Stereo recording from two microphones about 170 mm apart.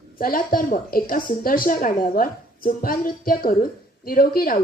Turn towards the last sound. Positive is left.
turn(degrees=60)  # may be behind; listen again after turning